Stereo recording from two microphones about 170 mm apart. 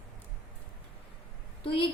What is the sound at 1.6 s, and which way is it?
Speech, 30° left (ahead or behind).